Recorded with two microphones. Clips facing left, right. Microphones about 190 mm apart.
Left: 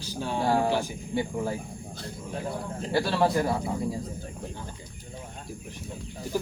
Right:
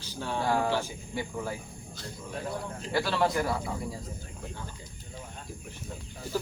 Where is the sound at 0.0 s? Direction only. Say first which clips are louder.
Left 3 dB; 15° left (ahead or behind).